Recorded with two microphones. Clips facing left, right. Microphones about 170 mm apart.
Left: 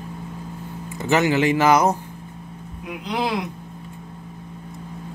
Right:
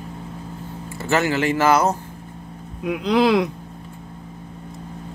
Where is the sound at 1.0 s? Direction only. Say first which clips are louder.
Left 2 dB; 15° left (ahead or behind).